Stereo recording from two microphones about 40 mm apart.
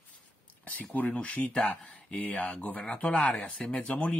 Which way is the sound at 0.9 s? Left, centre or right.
Left.